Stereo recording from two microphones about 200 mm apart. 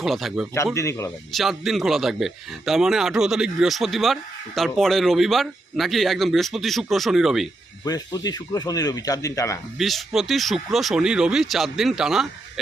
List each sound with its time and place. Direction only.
0.0 s a man's voice: centre (ahead or behind)
0.5 s speech: 15° left (ahead or behind)
1.3 s a man's voice: centre (ahead or behind)
7.9 s speech: 20° left (ahead or behind)
9.7 s a man's voice: centre (ahead or behind)